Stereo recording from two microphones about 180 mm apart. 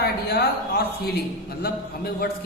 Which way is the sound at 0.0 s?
60° left (ahead or behind).